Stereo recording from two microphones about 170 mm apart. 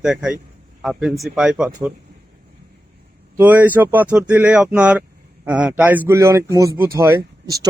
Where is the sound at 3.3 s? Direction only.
10° right (ahead or behind).